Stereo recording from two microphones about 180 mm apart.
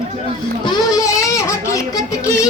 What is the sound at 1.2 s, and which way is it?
Baby cry, 15° left (ahead or behind).